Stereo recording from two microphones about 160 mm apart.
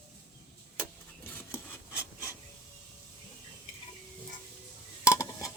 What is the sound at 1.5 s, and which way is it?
Rub, 15° left (ahead or behind).